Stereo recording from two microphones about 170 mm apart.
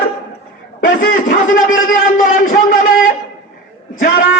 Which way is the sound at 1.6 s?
50° left (ahead or behind).